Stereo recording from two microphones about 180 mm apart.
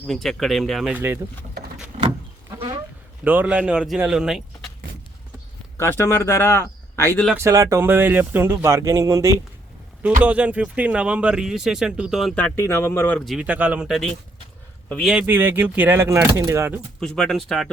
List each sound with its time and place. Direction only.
0.1 s speech: centre (ahead or behind)
2.0 s power windows: 30° right (ahead or behind)
3.2 s speech: 10° right (ahead or behind)
5.7 s speech: 15° left (ahead or behind)
7.3 s a man's voice: 15° right (ahead or behind); by 15.1 s 5° left (ahead or behind)
15.1 s speech: 10° right (ahead or behind)
17.0 s speech: 5° left (ahead or behind)